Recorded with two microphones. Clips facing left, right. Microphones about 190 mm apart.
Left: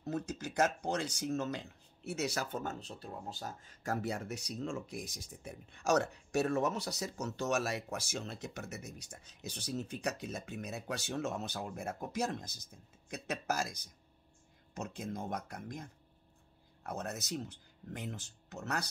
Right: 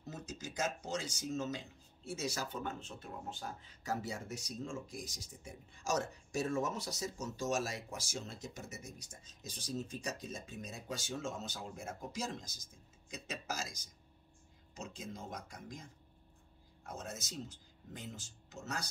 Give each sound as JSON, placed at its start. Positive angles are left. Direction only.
{"t": 0.0, "sound": "speech", "side_deg": 60}
{"t": 2.6, "sound": "speech", "side_deg": 40}